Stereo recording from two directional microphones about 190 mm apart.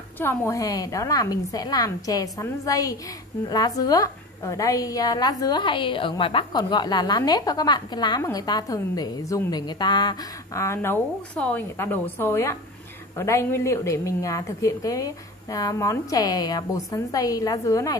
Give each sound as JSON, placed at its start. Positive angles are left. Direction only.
{"t": 0.2, "sound": "a woman's voice", "side_deg": 15}